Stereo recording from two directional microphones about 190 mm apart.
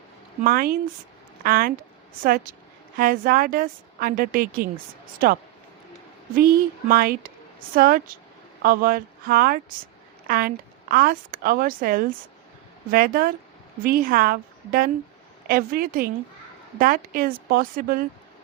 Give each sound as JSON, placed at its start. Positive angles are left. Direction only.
{"t": 0.4, "sound": "speech", "side_deg": -50}